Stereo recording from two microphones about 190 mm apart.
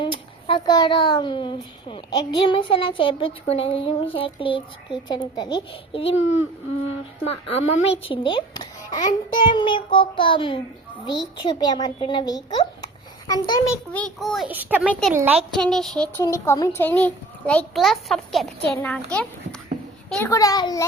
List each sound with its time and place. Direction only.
0.0 s a child's voice: 25° left (ahead or behind)
7.3 s a woman's voice: 30° left (ahead or behind)
13.9 s a child's voice: 5° left (ahead or behind)
15.5 s a child's voice: centre (ahead or behind)
16.1 s a child's voice: 15° left (ahead or behind)